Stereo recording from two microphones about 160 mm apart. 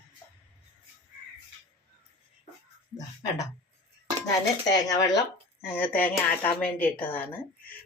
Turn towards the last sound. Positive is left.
turn(degrees=10)  # may be behind; listen again after turning